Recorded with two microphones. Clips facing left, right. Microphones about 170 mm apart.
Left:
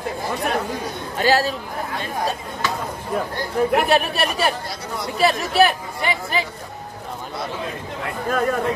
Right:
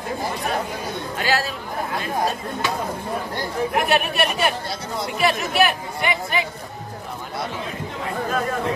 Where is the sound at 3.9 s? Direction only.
30° left (ahead or behind).